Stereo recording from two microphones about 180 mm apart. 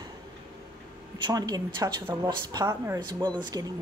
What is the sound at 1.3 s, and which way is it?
A woman's voice, 20° right (ahead or behind).